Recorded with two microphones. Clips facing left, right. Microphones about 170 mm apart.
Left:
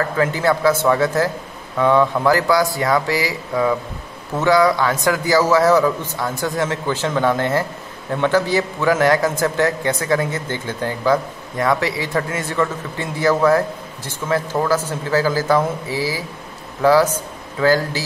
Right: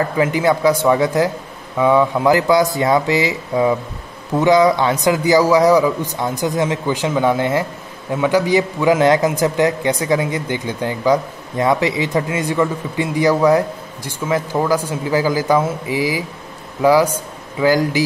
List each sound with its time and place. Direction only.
0.0 s a man's voice: 15° right (ahead or behind)